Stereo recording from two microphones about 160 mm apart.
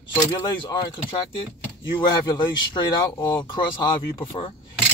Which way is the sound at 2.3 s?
30° left (ahead or behind).